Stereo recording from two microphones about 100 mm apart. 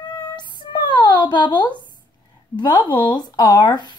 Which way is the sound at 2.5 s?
50° left (ahead or behind).